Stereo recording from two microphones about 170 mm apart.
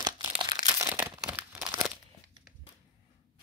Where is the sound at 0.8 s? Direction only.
15° right (ahead or behind).